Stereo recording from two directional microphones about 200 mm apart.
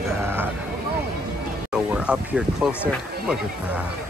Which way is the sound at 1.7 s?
5° right (ahead or behind).